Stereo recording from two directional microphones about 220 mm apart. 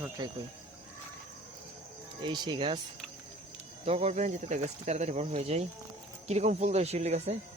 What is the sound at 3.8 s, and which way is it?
Speech, 30° right (ahead or behind).